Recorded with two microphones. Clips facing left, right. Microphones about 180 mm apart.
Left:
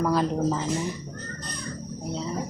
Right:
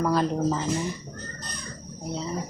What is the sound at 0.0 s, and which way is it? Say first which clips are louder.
Speech: even; 5° left (ahead or behind).